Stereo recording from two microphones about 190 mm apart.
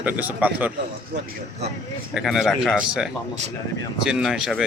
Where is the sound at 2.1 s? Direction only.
Centre (ahead or behind).